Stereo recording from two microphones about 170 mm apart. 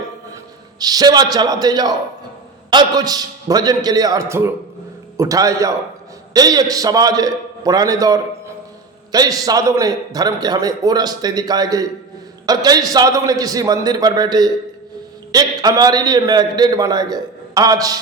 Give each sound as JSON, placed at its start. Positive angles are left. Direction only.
{"t": 0.8, "sound": "a man's voice", "side_deg": -20}